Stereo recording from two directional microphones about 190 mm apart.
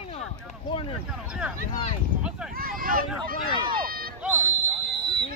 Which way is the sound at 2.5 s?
50° right (ahead or behind).